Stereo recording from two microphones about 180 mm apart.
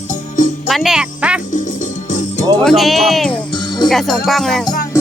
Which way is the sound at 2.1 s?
45° left (ahead or behind).